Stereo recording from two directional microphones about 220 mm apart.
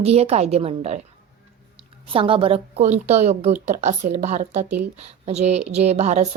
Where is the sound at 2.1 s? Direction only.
25° right (ahead or behind).